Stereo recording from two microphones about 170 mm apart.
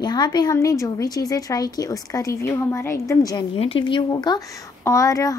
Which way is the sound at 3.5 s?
35° left (ahead or behind).